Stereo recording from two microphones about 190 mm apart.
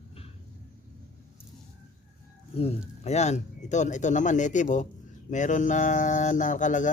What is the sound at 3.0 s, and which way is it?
Speech, 35° left (ahead or behind).